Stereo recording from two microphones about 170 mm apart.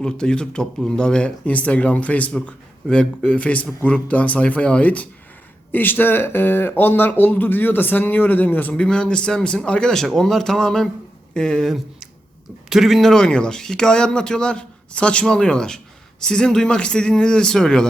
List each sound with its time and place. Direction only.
0.0 s speech: 5° left (ahead or behind)